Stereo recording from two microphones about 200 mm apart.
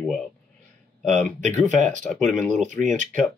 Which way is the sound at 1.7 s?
35° right (ahead or behind).